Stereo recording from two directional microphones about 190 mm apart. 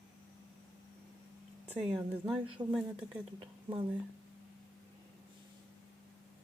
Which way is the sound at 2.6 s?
5° right (ahead or behind).